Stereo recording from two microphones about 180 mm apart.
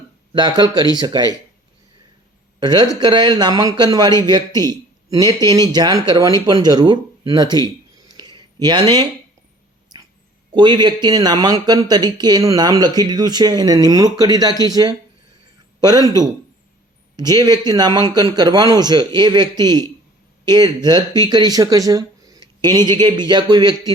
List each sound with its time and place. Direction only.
0.3 s speech: 25° right (ahead or behind)
2.6 s speech: 20° right (ahead or behind)
8.1 s a sound: 25° right (ahead or behind)
10.5 s speech: 25° right (ahead or behind)